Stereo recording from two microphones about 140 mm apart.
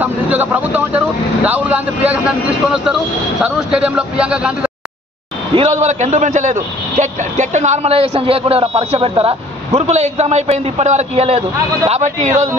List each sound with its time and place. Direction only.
0.0 s speech: 15° right (ahead or behind)
5.5 s a man's voice: 45° right (ahead or behind)
9.8 s a man's voice: 50° right (ahead or behind)